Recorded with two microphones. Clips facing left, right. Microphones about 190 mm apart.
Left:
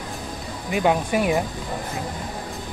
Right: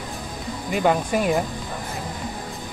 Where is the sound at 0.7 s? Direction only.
5° left (ahead or behind).